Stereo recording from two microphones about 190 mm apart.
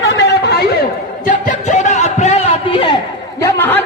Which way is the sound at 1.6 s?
40° left (ahead or behind).